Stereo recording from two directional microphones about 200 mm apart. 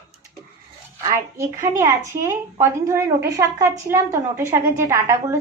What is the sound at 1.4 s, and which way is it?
A woman's voice, 15° right (ahead or behind).